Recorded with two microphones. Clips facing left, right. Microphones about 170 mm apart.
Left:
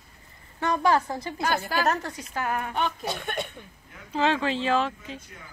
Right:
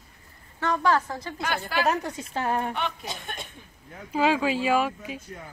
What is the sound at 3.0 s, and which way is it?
Speech, 65° left (ahead or behind).